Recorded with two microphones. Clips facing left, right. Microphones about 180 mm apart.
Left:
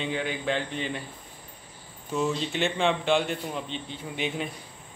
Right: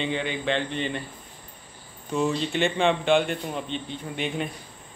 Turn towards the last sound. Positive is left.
turn(degrees=0)  # may be behind; listen again after turning